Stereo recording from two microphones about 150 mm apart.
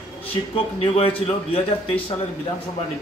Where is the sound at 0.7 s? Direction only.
40° left (ahead or behind).